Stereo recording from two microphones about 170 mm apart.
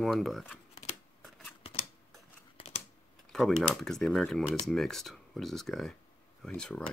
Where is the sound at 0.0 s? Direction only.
Centre (ahead or behind).